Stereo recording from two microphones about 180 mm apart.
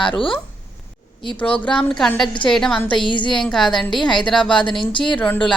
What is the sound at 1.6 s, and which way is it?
A woman's voice, 5° left (ahead or behind).